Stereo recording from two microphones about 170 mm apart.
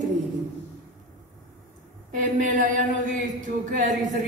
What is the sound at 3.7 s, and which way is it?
Speech, 50° right (ahead or behind).